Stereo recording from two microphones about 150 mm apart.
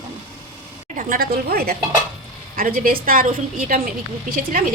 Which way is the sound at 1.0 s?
70° right (ahead or behind).